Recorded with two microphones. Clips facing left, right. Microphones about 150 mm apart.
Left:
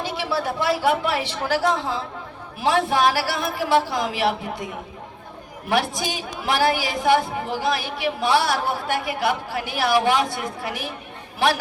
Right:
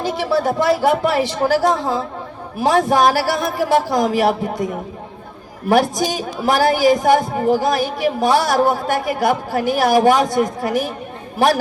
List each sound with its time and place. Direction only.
0.0 s a woman's voice: 40° right (ahead or behind)